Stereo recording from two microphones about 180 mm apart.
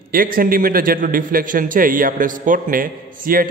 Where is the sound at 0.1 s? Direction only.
50° right (ahead or behind).